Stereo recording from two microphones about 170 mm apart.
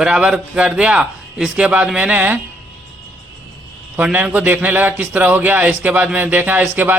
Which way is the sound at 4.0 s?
10° right (ahead or behind).